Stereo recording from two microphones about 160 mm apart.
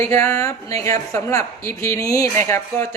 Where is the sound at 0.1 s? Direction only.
15° left (ahead or behind).